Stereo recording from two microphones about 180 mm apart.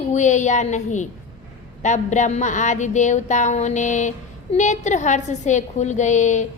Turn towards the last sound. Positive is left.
turn(degrees=40)  # may be behind; listen again after turning